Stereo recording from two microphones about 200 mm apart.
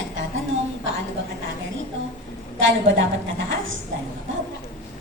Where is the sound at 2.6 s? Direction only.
70° right (ahead or behind).